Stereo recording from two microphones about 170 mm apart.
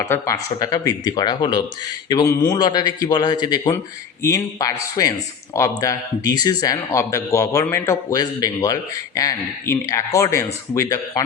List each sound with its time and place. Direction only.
0.0 s a man's voice: 15° left (ahead or behind)